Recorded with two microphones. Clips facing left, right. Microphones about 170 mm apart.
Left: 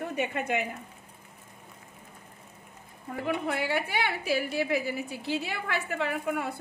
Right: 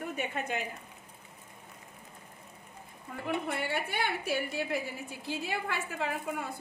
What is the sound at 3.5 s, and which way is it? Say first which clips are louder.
A woman's voice: left 4 dB; 80° left.